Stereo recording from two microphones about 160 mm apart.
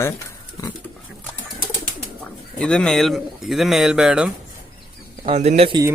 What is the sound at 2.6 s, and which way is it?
Speech, 5° left (ahead or behind).